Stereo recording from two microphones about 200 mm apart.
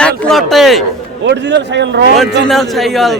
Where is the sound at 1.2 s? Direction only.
60° right (ahead or behind).